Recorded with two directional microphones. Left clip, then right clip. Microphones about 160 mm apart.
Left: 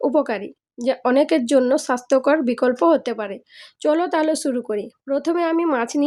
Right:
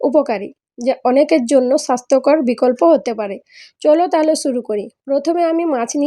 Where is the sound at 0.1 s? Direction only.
15° right (ahead or behind).